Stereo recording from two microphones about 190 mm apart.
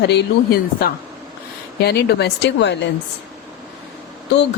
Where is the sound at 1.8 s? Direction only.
60° left (ahead or behind).